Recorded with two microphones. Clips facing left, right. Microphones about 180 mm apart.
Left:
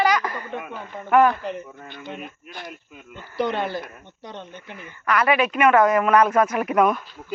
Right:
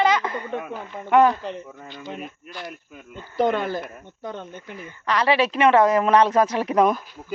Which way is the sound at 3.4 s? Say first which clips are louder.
Right 3 dB; 45° right (ahead or behind).